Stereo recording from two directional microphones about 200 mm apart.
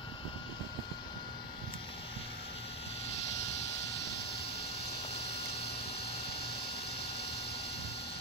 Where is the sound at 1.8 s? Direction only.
30° left (ahead or behind).